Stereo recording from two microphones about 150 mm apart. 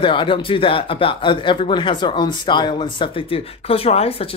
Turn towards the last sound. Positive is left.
turn(degrees=40)  # may be behind; listen again after turning